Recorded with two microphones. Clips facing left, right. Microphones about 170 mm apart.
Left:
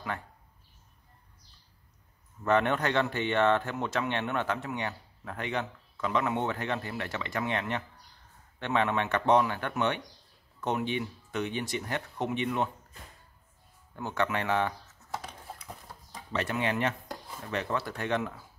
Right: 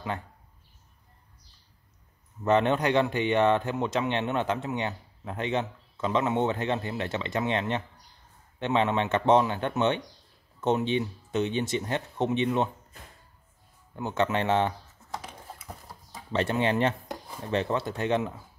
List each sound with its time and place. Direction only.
2.4 s speech: 20° right (ahead or behind)
13.9 s speech: 20° right (ahead or behind)
15.0 s typing: centre (ahead or behind)
16.3 s speech: 25° right (ahead or behind)